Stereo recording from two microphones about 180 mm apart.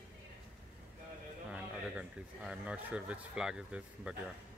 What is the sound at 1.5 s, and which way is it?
Speech, 5° right (ahead or behind).